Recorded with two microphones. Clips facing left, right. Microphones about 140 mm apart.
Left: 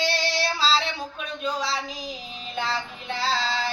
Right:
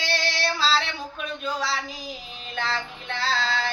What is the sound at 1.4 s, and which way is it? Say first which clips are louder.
Speech: left 1 dB; centre (ahead or behind).